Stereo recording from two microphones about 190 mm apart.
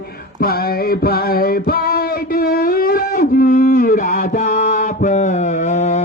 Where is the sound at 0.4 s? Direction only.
50° left (ahead or behind).